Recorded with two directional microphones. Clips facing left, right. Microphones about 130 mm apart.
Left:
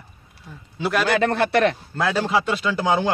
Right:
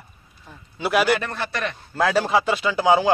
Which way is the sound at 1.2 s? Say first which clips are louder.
Left 10 dB; 70° left (ahead or behind).